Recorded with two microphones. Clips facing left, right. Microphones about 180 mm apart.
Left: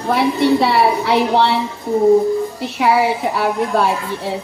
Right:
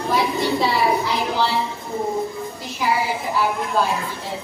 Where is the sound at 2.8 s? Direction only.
70° left (ahead or behind).